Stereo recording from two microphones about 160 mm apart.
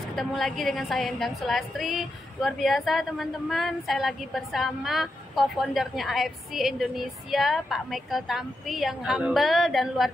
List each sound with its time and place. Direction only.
0.1 s a woman's voice: centre (ahead or behind)